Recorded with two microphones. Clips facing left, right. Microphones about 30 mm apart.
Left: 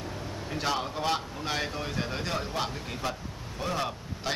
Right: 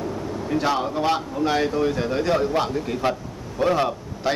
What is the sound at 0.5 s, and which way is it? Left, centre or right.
Speech, centre.